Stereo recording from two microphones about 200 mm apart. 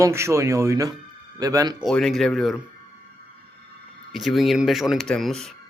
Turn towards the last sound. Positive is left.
turn(degrees=0)  # may be behind; listen again after turning